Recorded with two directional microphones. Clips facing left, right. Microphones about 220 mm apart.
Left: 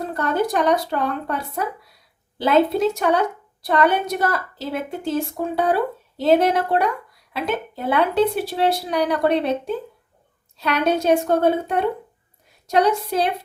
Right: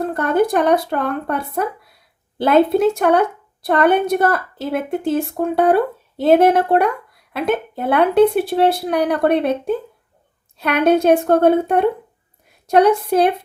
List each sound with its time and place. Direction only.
0.0 s a woman's voice: 55° right (ahead or behind)